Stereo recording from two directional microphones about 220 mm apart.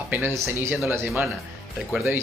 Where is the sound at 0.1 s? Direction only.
10° right (ahead or behind).